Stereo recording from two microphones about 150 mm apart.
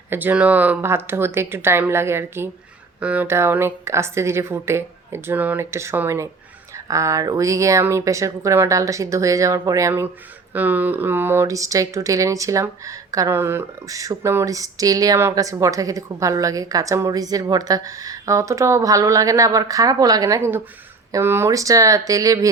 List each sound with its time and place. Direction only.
0.1 s a woman's voice: 10° right (ahead or behind)